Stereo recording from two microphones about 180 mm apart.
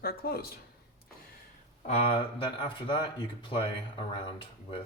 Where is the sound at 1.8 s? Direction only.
35° left (ahead or behind).